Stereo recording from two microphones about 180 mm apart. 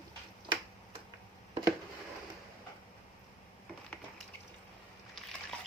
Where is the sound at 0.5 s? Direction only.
25° right (ahead or behind).